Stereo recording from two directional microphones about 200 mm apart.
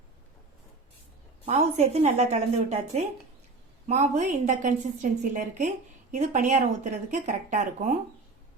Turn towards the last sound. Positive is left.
turn(degrees=-35)  # may be behind; listen again after turning